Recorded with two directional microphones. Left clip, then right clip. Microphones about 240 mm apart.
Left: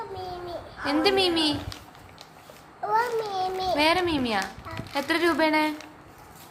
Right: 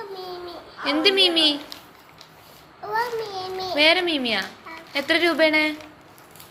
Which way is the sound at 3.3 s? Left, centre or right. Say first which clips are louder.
Left 2 dB; centre.